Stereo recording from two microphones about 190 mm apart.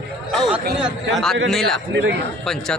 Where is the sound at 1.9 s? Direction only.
75° right (ahead or behind).